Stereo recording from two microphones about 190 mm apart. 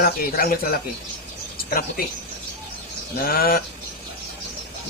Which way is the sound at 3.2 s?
50° left (ahead or behind).